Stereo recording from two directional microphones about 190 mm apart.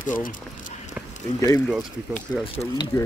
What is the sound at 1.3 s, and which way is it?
Speech, 20° left (ahead or behind).